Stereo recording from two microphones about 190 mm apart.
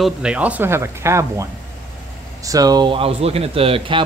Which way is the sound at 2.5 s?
20° right (ahead or behind).